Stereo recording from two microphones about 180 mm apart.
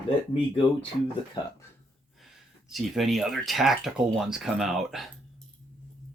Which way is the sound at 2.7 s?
Centre (ahead or behind).